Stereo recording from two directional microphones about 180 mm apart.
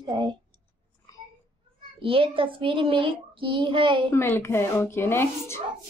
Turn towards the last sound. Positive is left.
turn(degrees=15)  # may be behind; listen again after turning